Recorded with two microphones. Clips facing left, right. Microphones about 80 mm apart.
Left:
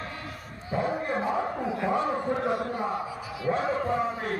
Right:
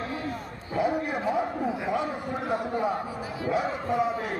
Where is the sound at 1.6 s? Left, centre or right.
Centre.